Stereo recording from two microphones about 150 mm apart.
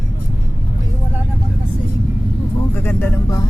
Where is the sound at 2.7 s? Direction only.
15° left (ahead or behind).